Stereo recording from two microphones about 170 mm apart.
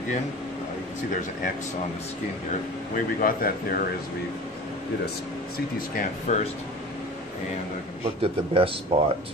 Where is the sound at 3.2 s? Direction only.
55° left (ahead or behind).